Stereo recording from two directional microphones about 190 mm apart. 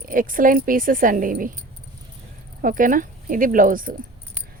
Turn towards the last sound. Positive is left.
turn(degrees=-45)  # may be behind; listen again after turning